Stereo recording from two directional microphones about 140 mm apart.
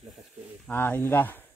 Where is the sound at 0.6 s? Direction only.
15° left (ahead or behind).